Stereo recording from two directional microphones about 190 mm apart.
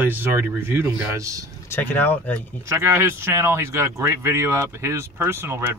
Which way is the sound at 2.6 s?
15° right (ahead or behind).